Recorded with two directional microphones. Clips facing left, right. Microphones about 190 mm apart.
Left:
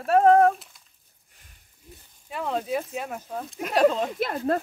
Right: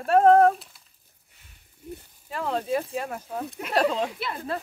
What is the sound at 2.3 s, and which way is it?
Speech, centre (ahead or behind).